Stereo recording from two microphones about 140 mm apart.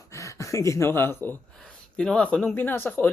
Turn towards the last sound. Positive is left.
turn(degrees=15)  # may be behind; listen again after turning